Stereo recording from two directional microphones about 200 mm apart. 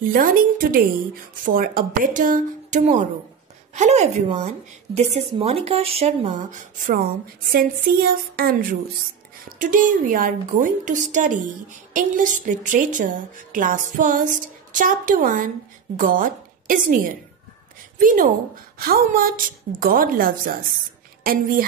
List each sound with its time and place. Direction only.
0.0 s a woman's voice: 45° right (ahead or behind)